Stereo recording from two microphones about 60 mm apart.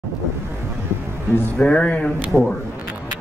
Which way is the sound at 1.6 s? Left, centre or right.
Centre.